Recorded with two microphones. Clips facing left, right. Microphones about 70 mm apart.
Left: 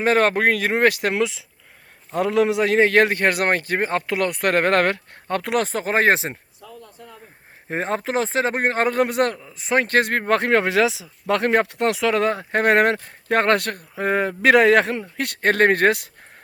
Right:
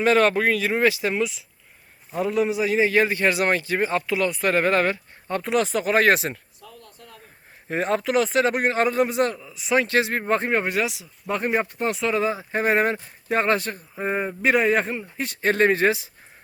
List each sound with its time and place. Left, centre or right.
0.0 s speech: left
0.4 s a man's voice: left
2.1 s a man's voice: left
6.6 s a sound: centre
7.7 s a man's voice: left
15.2 s a man's voice: left